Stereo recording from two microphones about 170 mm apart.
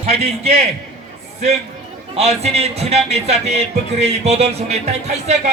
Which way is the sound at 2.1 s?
40° right (ahead or behind).